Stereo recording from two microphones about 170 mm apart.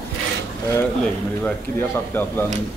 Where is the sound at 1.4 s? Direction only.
10° left (ahead or behind).